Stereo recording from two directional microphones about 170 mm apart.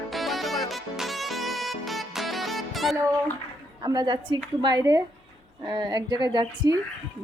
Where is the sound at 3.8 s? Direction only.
25° right (ahead or behind).